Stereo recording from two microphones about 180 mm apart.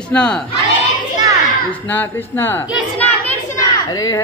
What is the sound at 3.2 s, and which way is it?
Children playing, 15° left (ahead or behind).